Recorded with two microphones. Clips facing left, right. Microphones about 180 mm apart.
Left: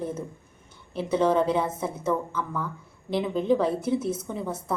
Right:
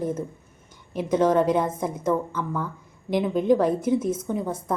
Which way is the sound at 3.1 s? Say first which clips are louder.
Right 3 dB; 10° right (ahead or behind).